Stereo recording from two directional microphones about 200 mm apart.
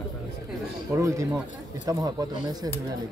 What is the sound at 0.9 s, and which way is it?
A man's voice, 15° right (ahead or behind).